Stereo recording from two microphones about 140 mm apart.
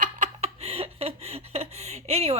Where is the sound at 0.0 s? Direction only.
50° right (ahead or behind).